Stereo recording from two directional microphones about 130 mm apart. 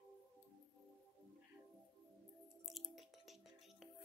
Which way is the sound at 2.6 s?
Centre (ahead or behind).